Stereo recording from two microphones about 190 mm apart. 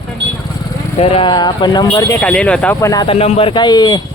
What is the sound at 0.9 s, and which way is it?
Speech, 30° left (ahead or behind).